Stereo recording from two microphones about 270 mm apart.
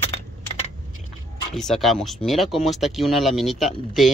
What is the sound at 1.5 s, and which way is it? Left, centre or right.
Speech, centre.